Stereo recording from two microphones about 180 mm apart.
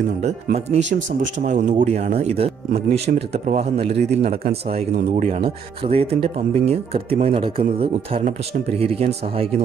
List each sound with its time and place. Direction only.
0.2 s speech: 40° right (ahead or behind)